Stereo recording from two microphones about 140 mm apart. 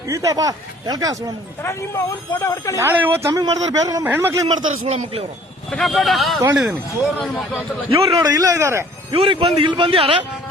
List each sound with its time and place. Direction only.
0.1 s speech: 25° right (ahead or behind)
1.6 s speech: 20° left (ahead or behind)
2.7 s speech: 15° right (ahead or behind)
3.3 s speech: 25° right (ahead or behind)
4.9 s speech: 50° right (ahead or behind)
5.7 s speech: centre (ahead or behind)
7.9 s a man's voice: 40° right (ahead or behind)
8.3 s speech: 25° right (ahead or behind)
9.1 s a man's voice: 40° right (ahead or behind)